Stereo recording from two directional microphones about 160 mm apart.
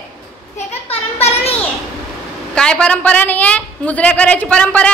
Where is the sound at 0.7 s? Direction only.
40° left (ahead or behind).